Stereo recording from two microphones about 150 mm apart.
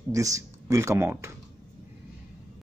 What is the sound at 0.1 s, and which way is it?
Speech, 20° right (ahead or behind).